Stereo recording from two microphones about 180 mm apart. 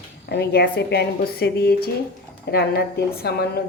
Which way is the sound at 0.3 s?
60° left (ahead or behind).